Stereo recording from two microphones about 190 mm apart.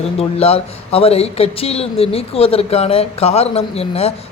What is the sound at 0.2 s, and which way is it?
Speech, 30° left (ahead or behind).